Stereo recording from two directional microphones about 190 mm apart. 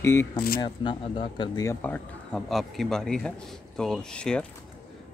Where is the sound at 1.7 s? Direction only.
10° left (ahead or behind).